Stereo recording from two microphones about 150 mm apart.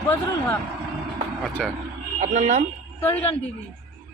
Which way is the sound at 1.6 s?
5° left (ahead or behind).